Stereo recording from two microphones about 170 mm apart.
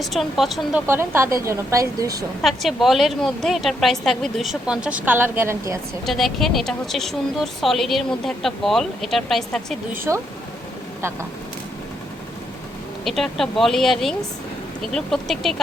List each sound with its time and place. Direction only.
0.0 s speech: centre (ahead or behind)
0.9 s a woman's voice: 15° right (ahead or behind)
2.4 s a woman's voice: centre (ahead or behind); by 5.8 s 15° right (ahead or behind)
6.1 s speech: centre (ahead or behind)
10.1 s a woman's voice: 15° right (ahead or behind)
13.1 s speech: centre (ahead or behind)